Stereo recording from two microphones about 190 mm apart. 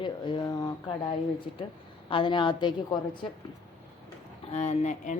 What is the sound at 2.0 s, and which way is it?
Speech, 25° left (ahead or behind).